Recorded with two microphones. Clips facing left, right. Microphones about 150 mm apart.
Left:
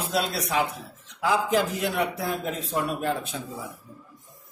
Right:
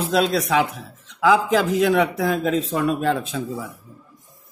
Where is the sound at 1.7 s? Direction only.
90° right.